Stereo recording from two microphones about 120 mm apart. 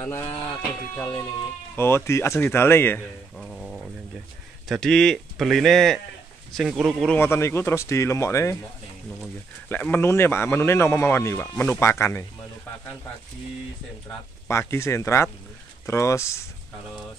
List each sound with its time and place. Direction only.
0.0 s speech: 25° left (ahead or behind)
1.8 s speech: 20° left (ahead or behind)
3.3 s sizzle: centre (ahead or behind)
4.6 s speech: 5° left (ahead or behind)
7.2 s speech: 20° left (ahead or behind)
9.7 s speech: 15° left (ahead or behind)
14.5 s speech: 25° left (ahead or behind)